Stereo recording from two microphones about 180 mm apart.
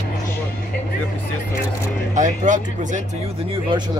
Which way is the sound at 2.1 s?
45° right (ahead or behind).